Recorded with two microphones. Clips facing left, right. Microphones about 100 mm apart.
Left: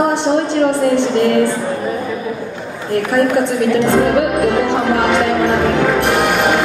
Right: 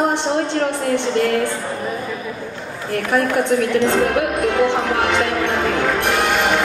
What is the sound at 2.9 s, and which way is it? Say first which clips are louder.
A woman's voice: left 4 dB; 15° left (ahead or behind).